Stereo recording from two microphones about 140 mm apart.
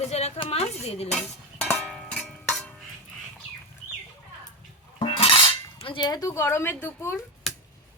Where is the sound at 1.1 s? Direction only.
5° left (ahead or behind).